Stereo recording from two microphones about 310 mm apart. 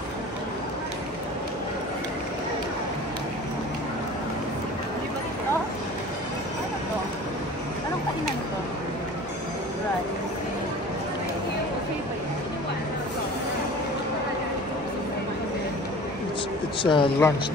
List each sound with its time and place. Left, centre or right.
16.8 s speech: centre